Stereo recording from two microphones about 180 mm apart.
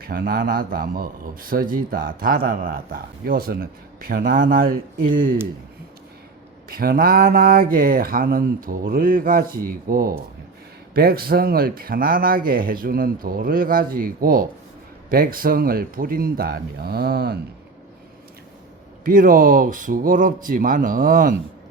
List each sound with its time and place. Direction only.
0.0 s speech: 55° right (ahead or behind)
6.7 s speech: 55° right (ahead or behind)
19.0 s speech: 50° right (ahead or behind)